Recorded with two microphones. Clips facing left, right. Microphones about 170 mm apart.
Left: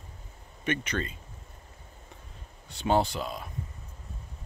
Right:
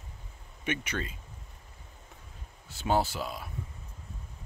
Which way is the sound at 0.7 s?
10° right (ahead or behind).